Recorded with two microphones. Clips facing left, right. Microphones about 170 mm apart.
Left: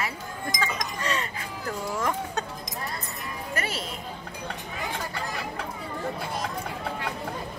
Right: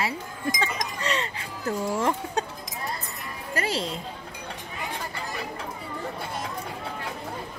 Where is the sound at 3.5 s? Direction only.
30° right (ahead or behind).